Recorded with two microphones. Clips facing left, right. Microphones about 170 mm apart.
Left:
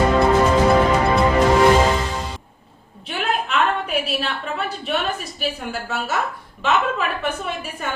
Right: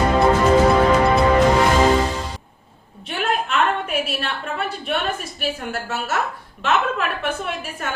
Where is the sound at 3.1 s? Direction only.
Centre (ahead or behind).